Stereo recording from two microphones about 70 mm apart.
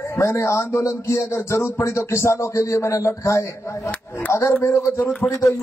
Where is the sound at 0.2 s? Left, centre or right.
Left.